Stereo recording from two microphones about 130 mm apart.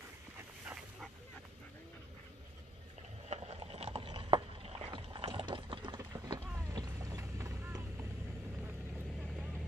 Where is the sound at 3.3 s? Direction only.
55° right (ahead or behind); by 6.0 s 35° right (ahead or behind).